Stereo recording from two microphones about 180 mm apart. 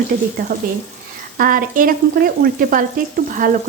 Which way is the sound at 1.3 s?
50° right (ahead or behind).